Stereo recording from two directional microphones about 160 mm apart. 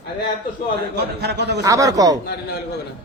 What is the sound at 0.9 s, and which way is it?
Speech, 90° right.